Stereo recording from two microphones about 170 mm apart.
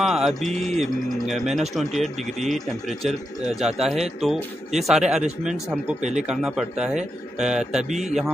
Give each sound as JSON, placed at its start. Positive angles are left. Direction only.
{"t": 0.0, "sound": "speech", "side_deg": 0}
{"t": 5.9, "sound": "speech", "side_deg": -45}
{"t": 6.2, "sound": "speech", "side_deg": -5}